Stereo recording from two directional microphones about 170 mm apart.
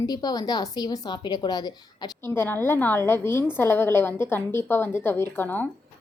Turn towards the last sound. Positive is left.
turn(degrees=10)  # may be behind; listen again after turning